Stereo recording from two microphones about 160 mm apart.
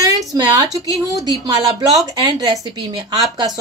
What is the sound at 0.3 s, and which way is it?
Speech, 20° right (ahead or behind).